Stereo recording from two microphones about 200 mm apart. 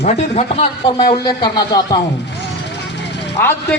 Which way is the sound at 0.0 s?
30° left (ahead or behind).